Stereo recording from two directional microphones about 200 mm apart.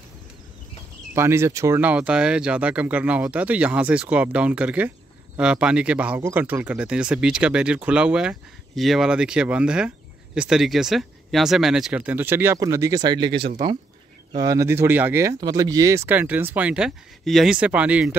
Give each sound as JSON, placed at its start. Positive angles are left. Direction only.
{"t": 1.1, "sound": "speech", "side_deg": -15}